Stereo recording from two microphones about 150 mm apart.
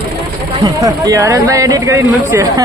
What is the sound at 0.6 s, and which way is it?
Speech, 20° right (ahead or behind).